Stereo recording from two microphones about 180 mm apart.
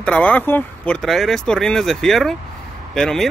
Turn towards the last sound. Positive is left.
turn(degrees=5)  # may be behind; listen again after turning